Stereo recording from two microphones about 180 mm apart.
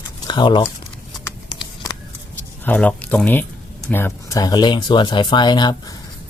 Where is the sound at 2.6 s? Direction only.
5° left (ahead or behind); by 5.8 s 25° left (ahead or behind).